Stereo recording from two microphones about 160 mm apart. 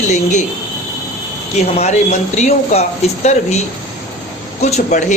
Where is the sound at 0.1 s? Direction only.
50° left (ahead or behind).